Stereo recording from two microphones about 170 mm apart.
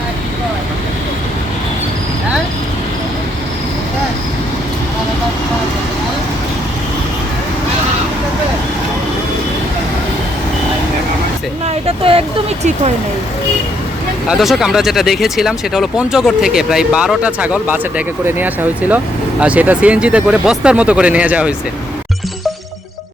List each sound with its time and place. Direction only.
11.6 s vehicle: 35° right (ahead or behind)
14.3 s speech: centre (ahead or behind)